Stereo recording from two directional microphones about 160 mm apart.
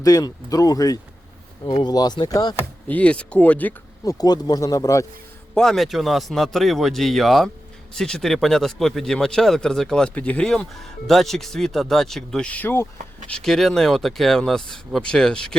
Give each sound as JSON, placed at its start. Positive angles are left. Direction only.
{"t": 0.0, "sound": "speech", "side_deg": 25}
{"t": 2.8, "sound": "speech", "side_deg": 10}
{"t": 4.0, "sound": "speech", "side_deg": 20}
{"t": 5.5, "sound": "a man's voice", "side_deg": 0}
{"t": 13.3, "sound": "a man's voice", "side_deg": 5}